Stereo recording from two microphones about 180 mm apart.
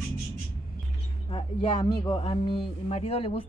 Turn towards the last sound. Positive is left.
turn(degrees=35)  # may be behind; listen again after turning